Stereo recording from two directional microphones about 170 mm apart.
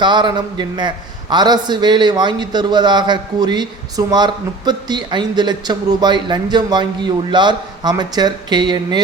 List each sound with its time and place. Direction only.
0.0 s a man's voice: 25° right (ahead or behind)